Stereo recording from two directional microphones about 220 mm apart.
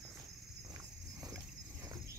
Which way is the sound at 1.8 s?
15° right (ahead or behind).